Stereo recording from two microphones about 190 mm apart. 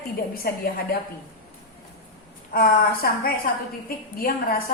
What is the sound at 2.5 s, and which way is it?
A woman's voice, 50° left (ahead or behind).